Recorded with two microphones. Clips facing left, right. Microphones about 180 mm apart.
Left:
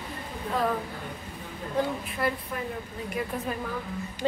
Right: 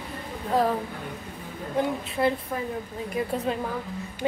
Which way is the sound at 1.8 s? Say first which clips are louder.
Right 3 dB; 25° right (ahead or behind).